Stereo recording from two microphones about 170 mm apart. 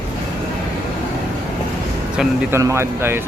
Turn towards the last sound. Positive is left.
turn(degrees=-15)  # may be behind; listen again after turning